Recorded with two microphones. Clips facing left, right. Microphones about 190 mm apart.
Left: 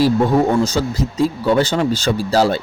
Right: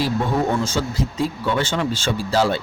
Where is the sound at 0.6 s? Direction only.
40° left (ahead or behind).